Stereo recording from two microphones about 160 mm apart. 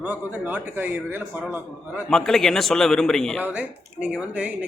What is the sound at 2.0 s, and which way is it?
A man's voice, 5° left (ahead or behind).